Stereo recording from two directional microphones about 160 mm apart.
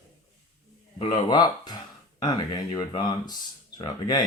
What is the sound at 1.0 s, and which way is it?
Speech, 25° left (ahead or behind).